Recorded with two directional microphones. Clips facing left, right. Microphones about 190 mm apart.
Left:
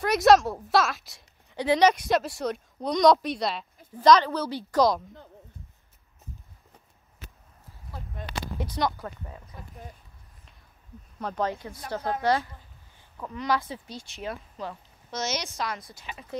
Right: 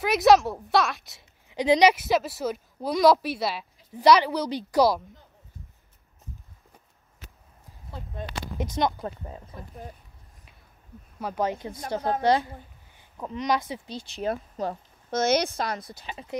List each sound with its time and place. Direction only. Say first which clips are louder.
0.0 s a woman's voice: even; centre (ahead or behind)
1.5 s a woman's voice: right 2 dB; 15° right (ahead or behind)
8.7 s speech: right 3 dB; 20° right (ahead or behind)
11.1 s speech: right 1 dB; 10° right (ahead or behind)
13.9 s speech: right 8 dB; 35° right (ahead or behind)
14.3 s speech: right 6 dB; 45° right (ahead or behind)
15.9 s speech: right 3 dB; 35° right (ahead or behind)